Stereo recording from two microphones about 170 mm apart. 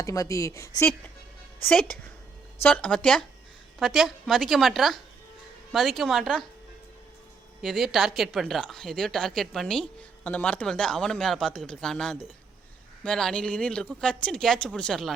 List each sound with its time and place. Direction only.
0.0 s a woman's voice: 20° left (ahead or behind)
2.6 s a woman's voice: 10° left (ahead or behind)
7.6 s a woman's voice: centre (ahead or behind)